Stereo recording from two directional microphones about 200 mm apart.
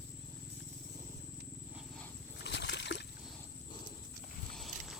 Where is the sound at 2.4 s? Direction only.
60° left (ahead or behind).